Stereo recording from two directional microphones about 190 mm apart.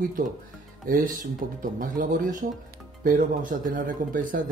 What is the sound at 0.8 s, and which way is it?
Speech, 50° right (ahead or behind).